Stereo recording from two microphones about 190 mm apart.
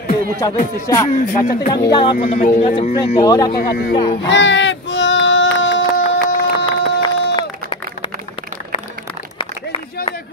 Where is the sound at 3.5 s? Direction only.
55° left (ahead or behind).